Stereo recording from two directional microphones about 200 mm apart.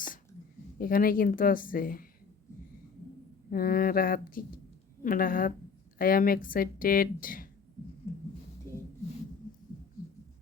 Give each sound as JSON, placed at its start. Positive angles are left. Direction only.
{"t": 0.8, "sound": "speech", "side_deg": 45}
{"t": 3.5, "sound": "speech", "side_deg": 45}
{"t": 8.1, "sound": "a sound", "side_deg": 15}